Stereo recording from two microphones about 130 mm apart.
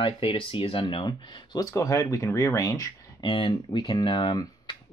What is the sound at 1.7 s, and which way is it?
Speech, 20° left (ahead or behind).